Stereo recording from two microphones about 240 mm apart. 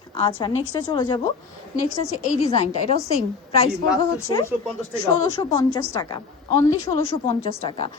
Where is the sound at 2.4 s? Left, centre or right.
Left.